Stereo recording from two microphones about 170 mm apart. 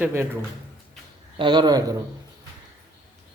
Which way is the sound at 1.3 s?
25° right (ahead or behind).